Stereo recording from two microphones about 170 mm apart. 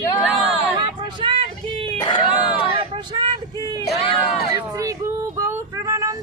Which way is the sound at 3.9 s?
35° left (ahead or behind).